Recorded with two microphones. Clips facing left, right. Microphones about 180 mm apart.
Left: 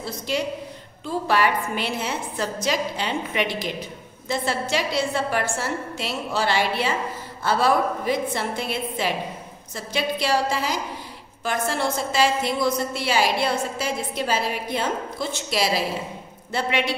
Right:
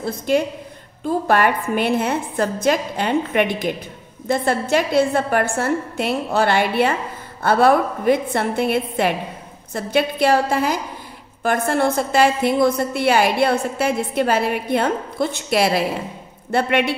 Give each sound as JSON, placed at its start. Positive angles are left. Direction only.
{"t": 0.0, "sound": "a woman's voice", "side_deg": -50}